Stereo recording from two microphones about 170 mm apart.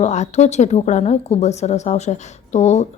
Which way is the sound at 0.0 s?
40° left (ahead or behind).